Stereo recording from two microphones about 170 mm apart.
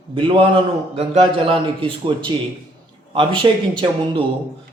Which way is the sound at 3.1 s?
30° right (ahead or behind).